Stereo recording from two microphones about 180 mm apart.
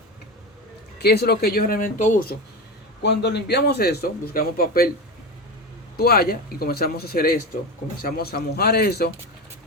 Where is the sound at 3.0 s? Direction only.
70° left (ahead or behind).